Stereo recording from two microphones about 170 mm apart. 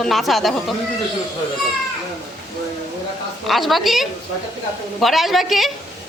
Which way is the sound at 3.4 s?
Centre (ahead or behind).